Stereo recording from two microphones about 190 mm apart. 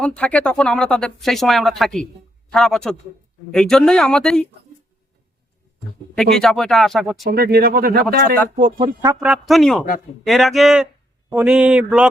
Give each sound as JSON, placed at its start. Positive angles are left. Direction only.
{"t": 0.0, "sound": "speech", "side_deg": 5}
{"t": 6.1, "sound": "speech", "side_deg": 0}
{"t": 7.3, "sound": "speech", "side_deg": -55}
{"t": 8.4, "sound": "speech", "side_deg": -40}
{"t": 9.2, "sound": "speech", "side_deg": 0}